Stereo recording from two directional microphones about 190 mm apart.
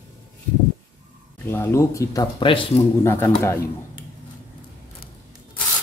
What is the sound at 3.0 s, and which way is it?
Speech, 15° left (ahead or behind).